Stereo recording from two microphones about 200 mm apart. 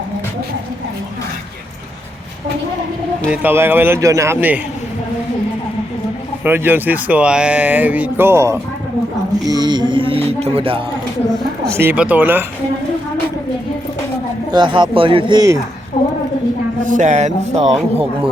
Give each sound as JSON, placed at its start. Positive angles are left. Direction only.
{"t": 3.2, "sound": "speech", "side_deg": -10}
{"t": 6.4, "sound": "speech", "side_deg": -10}
{"t": 11.8, "sound": "speech", "side_deg": -10}
{"t": 14.5, "sound": "speech", "side_deg": -25}
{"t": 16.8, "sound": "speech", "side_deg": -40}